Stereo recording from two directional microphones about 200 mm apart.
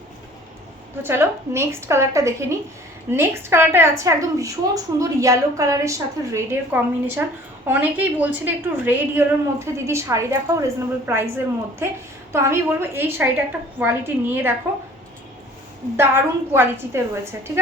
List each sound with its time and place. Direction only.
1.0 s a woman's voice: 10° right (ahead or behind)
16.0 s a woman's voice: 10° right (ahead or behind)